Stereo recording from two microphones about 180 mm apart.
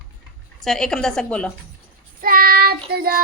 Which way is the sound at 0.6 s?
Centre (ahead or behind).